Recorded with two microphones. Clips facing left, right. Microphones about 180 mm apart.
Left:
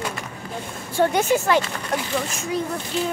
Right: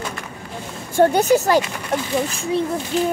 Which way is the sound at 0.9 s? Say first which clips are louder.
Right 5 dB; 40° right (ahead or behind).